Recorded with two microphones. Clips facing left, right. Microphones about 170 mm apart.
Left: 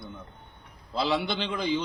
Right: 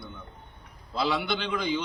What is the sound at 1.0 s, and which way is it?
Speech, 30° left (ahead or behind).